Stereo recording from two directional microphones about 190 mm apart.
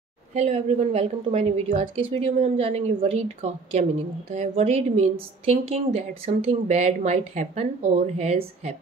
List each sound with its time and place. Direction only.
0.3 s a woman's voice: 35° right (ahead or behind)